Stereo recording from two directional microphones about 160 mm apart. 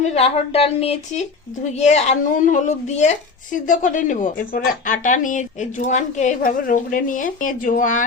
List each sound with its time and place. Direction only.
0.0 s a woman's voice: 40° left (ahead or behind)